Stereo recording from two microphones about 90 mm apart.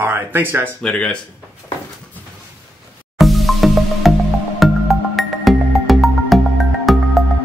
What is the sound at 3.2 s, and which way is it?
Music, centre (ahead or behind).